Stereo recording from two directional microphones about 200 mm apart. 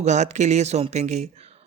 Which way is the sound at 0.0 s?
35° right (ahead or behind).